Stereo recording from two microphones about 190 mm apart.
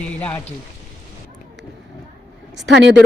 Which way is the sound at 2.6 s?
65° right (ahead or behind).